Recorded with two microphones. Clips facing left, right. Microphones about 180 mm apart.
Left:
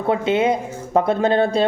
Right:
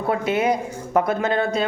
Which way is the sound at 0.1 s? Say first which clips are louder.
Left 3 dB; 25° left (ahead or behind).